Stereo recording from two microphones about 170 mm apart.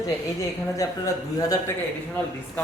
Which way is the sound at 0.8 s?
20° left (ahead or behind).